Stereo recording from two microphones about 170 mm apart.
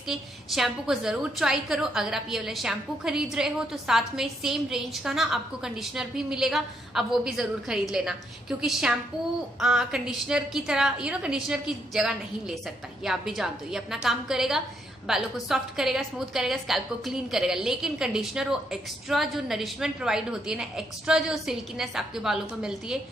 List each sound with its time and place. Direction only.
0.1 s a woman's voice: centre (ahead or behind)